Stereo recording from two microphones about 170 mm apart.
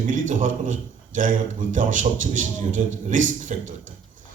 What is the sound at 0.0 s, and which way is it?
A man's voice, 50° right (ahead or behind).